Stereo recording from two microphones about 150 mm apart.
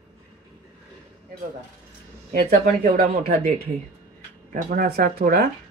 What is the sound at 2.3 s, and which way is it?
Speech, 85° right.